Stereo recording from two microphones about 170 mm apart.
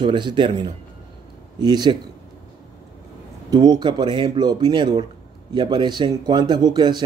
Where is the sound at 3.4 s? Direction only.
25° right (ahead or behind).